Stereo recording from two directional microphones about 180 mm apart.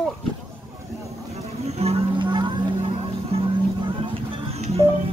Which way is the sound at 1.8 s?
35° right (ahead or behind).